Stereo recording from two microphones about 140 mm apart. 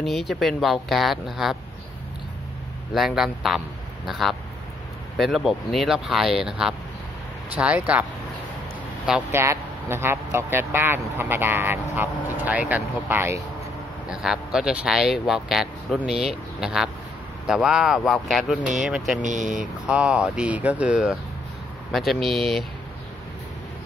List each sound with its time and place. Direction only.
0.0 s speech: centre (ahead or behind)
2.9 s a man's voice: centre (ahead or behind)
9.3 s speech: 20° right (ahead or behind)
14.0 s speech: 5° right (ahead or behind)